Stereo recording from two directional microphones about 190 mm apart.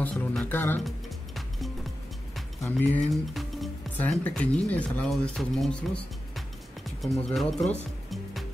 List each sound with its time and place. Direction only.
0.0 s speech: 5° left (ahead or behind)
0.8 s music: centre (ahead or behind)
2.6 s speech: 10° left (ahead or behind)
7.0 s speech: centre (ahead or behind)